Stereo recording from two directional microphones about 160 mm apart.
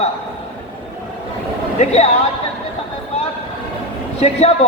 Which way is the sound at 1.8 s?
40° left (ahead or behind).